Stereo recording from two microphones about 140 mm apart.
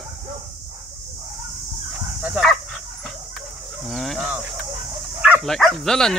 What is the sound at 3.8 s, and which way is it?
Livestock, centre (ahead or behind).